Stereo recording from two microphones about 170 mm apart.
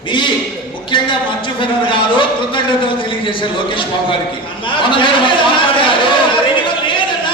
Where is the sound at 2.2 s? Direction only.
30° left (ahead or behind).